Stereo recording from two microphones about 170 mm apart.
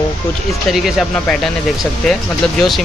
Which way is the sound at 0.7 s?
Centre (ahead or behind).